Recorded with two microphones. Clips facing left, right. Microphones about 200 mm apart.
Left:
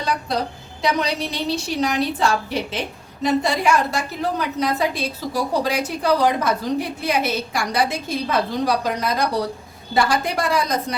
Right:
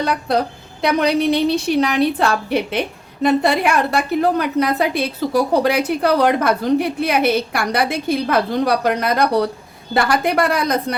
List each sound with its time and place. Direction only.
0.3 s a woman's voice: 60° right (ahead or behind)